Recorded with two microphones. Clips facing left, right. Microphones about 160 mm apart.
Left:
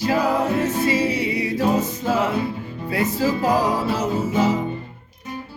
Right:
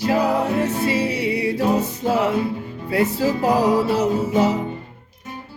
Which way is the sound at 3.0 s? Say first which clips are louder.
Even; 65° right (ahead or behind).